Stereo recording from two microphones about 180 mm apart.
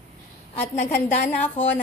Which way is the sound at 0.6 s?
15° left (ahead or behind).